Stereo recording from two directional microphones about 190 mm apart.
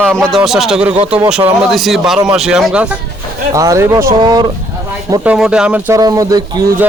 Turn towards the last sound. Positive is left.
turn(degrees=-20)  # may be behind; listen again after turning